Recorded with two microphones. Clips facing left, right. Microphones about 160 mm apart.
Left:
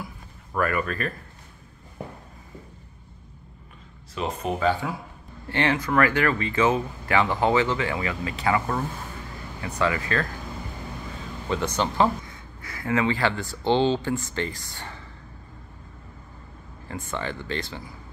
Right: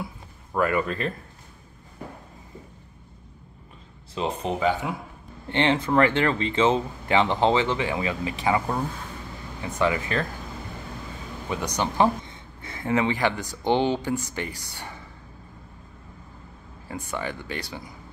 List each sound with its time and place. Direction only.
0.0 s a sound: 20° right (ahead or behind)
4.1 s speech: 30° right (ahead or behind)
4.6 s speech: 15° right (ahead or behind)
11.4 s speech: 15° right (ahead or behind)
16.8 s speech: 15° right (ahead or behind)